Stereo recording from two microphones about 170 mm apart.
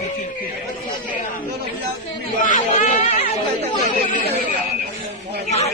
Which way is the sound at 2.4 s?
50° left (ahead or behind).